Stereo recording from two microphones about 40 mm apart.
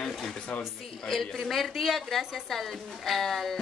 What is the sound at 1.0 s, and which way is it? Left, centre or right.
A woman's voice, centre.